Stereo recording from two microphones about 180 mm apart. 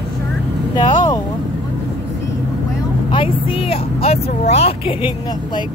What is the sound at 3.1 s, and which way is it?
Vehicle, 30° left (ahead or behind).